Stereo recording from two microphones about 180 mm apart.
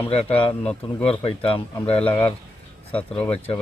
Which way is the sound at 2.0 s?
10° left (ahead or behind).